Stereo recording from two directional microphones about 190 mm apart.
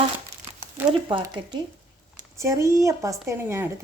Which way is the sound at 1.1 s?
25° right (ahead or behind).